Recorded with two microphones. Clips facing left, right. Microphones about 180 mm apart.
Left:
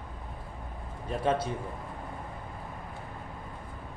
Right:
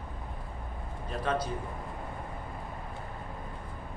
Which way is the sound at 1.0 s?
25° left (ahead or behind).